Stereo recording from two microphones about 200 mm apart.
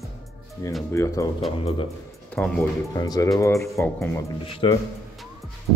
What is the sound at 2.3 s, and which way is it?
Speech, 5° left (ahead or behind).